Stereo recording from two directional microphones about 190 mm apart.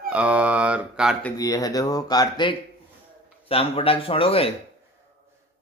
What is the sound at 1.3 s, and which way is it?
Speech, 20° left (ahead or behind).